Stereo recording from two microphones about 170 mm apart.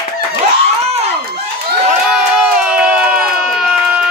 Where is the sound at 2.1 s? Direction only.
5° right (ahead or behind).